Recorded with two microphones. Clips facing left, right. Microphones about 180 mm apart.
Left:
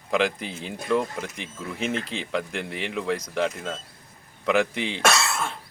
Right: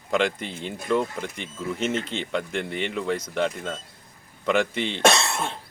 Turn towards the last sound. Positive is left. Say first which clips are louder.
# right 1 dB
turn(degrees=-30)  # may be behind; listen again after turning